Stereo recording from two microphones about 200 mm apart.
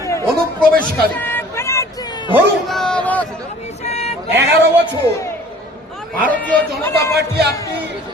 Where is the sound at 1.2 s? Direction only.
10° left (ahead or behind).